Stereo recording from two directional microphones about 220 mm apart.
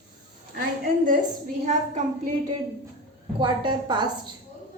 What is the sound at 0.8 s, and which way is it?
A woman's voice, 40° right (ahead or behind).